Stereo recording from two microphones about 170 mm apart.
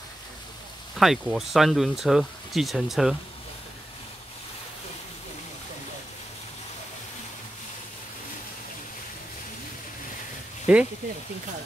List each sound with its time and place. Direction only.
0.9 s speech: centre (ahead or behind)
10.7 s speech: 5° right (ahead or behind)